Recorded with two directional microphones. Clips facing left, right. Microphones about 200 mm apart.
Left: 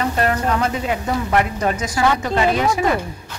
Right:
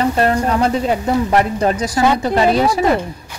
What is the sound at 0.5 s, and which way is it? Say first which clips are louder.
A woman's voice: right 4 dB; 35° right (ahead or behind).